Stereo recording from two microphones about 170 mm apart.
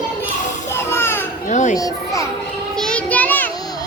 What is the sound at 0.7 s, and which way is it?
Music, 15° left (ahead or behind).